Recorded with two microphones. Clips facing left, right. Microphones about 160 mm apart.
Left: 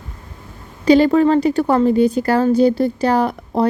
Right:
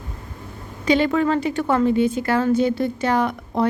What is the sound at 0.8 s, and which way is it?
A woman's voice, 35° left (ahead or behind).